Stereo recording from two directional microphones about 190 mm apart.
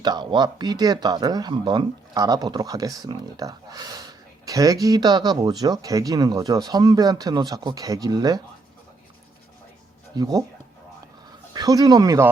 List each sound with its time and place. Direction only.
0.0 s speech: 20° right (ahead or behind)
10.2 s speech: 20° right (ahead or behind)
11.5 s speech: 20° right (ahead or behind)